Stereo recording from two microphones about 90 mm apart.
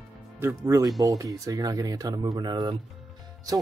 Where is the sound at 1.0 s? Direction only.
40° right (ahead or behind).